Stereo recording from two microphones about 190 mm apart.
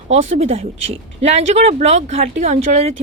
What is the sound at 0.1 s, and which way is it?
A woman's voice, 35° right (ahead or behind).